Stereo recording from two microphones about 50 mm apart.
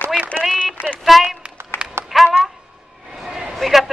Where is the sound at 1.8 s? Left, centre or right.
Right.